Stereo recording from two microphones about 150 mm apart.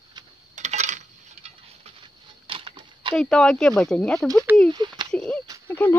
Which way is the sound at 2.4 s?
35° right (ahead or behind).